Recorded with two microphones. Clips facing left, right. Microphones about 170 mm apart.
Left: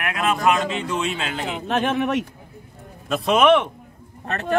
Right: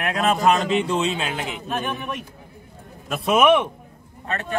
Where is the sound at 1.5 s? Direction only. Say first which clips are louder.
Left 5 dB; 80° left.